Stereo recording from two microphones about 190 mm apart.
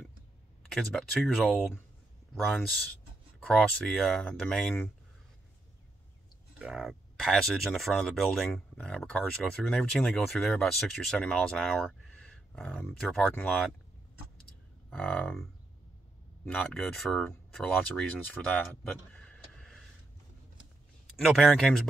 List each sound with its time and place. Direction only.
0.7 s speech: 5° left (ahead or behind)
3.3 s speech: 5° left (ahead or behind)
6.6 s speech: centre (ahead or behind)
14.9 s speech: 5° left (ahead or behind)
16.4 s speech: 5° left (ahead or behind)
19.1 s a sound: 5° left (ahead or behind)
21.2 s speech: centre (ahead or behind)